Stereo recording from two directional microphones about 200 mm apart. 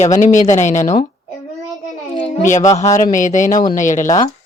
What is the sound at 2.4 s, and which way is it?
Speech, 40° left (ahead or behind).